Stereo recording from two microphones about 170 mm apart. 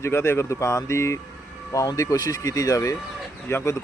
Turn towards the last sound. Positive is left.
turn(degrees=15)  # may be behind; listen again after turning